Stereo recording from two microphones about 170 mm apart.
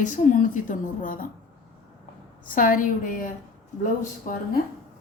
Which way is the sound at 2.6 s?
55° left (ahead or behind).